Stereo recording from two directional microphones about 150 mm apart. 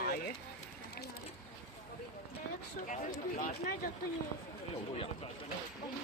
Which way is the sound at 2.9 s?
65° left (ahead or behind).